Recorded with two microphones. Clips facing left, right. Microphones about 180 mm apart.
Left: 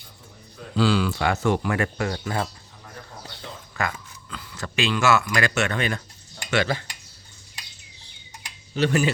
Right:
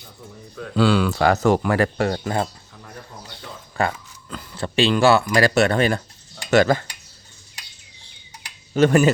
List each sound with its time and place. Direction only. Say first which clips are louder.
0.8 s speech: right 3 dB; 55° right (ahead or behind)
1.2 s speech: right 5 dB; 40° right (ahead or behind)
3.8 s a sound: right 6 dB; 30° right (ahead or behind)
4.5 s speech: right 6 dB; 30° right (ahead or behind)
8.7 s speech: right 7 dB; 50° right (ahead or behind)